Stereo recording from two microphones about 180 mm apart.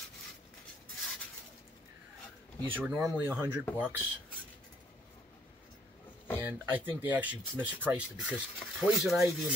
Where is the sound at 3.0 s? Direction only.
10° right (ahead or behind).